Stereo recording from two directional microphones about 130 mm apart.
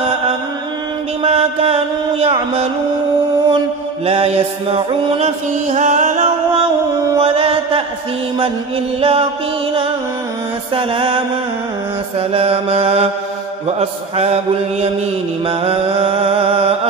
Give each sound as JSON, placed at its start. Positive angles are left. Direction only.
{"t": 1.2, "sound": "mantra", "side_deg": -50}
{"t": 7.2, "sound": "mantra", "side_deg": -45}
{"t": 10.7, "sound": "mantra", "side_deg": -45}
{"t": 12.2, "sound": "mantra", "side_deg": -45}